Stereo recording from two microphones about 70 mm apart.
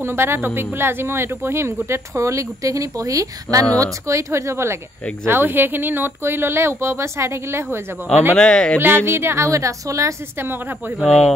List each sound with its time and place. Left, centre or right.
0.0 s speech: right
5.2 s speech: right
8.4 s speech: centre
8.7 s speech: right
10.3 s speech: right